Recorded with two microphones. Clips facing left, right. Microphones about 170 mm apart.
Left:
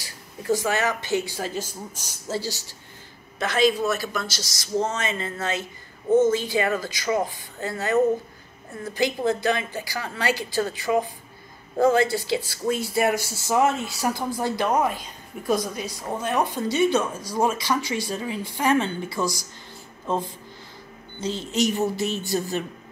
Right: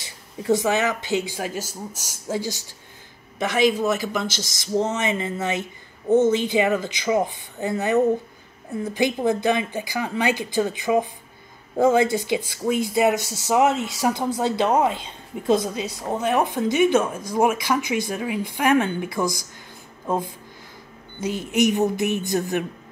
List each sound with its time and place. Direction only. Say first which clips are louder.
0.0 s speech: right 4 dB; 20° right (ahead or behind)
21.2 s speech: right 3 dB; 15° right (ahead or behind)